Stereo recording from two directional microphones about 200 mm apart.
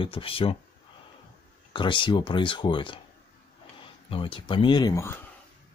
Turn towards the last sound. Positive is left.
turn(degrees=15)  # may be behind; listen again after turning